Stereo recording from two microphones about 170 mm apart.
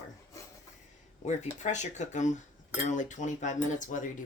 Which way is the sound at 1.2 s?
45° left (ahead or behind).